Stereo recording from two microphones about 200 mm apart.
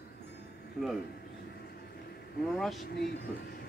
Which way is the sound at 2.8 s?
50° left (ahead or behind).